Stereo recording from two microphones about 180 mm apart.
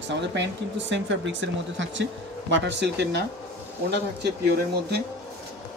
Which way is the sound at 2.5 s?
75° right (ahead or behind).